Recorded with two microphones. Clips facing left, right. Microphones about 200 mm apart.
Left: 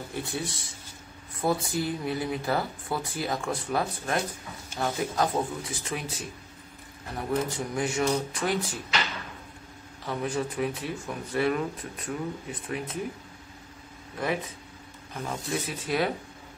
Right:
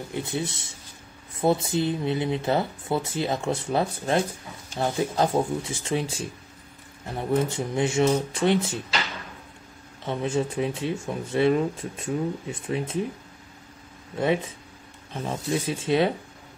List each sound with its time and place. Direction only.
0.1 s speech: 20° right (ahead or behind)
10.0 s speech: 25° right (ahead or behind)
14.2 s speech: 25° right (ahead or behind)